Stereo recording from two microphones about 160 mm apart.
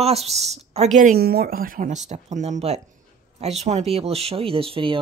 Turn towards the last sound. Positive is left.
turn(degrees=-35)  # may be behind; listen again after turning